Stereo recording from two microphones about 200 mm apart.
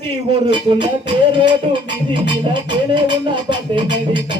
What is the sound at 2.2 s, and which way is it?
Music, 25° right (ahead or behind).